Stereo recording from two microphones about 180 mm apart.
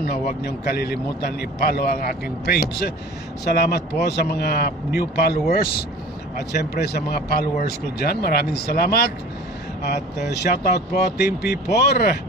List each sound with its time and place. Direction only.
0.0 s speech: 60° left (ahead or behind)
10.3 s speech: 65° left (ahead or behind)